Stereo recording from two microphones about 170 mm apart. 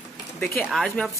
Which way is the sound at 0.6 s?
Centre (ahead or behind).